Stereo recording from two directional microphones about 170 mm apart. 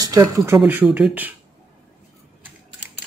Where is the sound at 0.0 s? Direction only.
20° right (ahead or behind).